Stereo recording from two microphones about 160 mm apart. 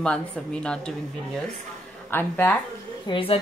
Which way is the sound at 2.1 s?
15° left (ahead or behind).